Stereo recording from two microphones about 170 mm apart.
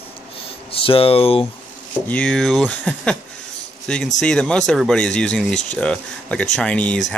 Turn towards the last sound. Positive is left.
turn(degrees=5)  # may be behind; listen again after turning